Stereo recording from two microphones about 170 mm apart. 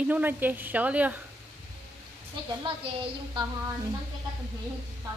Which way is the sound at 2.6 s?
30° right (ahead or behind).